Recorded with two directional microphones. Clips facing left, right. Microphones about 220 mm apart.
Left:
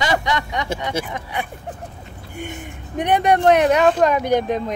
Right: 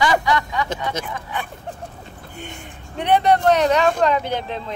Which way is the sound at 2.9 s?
15° left (ahead or behind).